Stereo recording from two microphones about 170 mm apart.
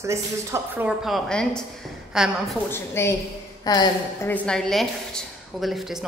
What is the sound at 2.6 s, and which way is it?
A woman's voice, 15° left (ahead or behind).